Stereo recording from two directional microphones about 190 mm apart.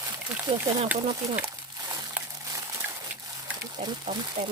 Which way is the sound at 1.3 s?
20° right (ahead or behind).